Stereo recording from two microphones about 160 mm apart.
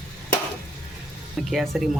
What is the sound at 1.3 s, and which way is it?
Speech, centre (ahead or behind).